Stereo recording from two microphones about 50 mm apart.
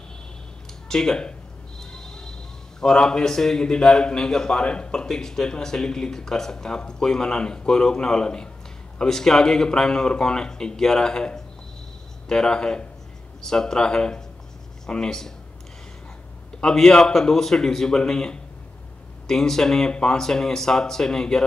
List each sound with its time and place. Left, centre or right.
0.8 s speech: centre
1.8 s a sound: centre
2.8 s a man's voice: centre
16.6 s a man's voice: centre